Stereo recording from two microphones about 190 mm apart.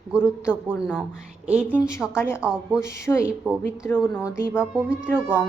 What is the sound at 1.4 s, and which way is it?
Speech, 5° right (ahead or behind).